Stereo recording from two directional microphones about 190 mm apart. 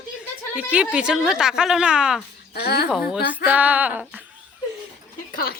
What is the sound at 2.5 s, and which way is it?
Speech, 60° left (ahead or behind).